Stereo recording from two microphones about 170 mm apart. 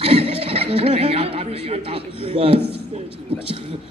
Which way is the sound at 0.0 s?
35° right (ahead or behind).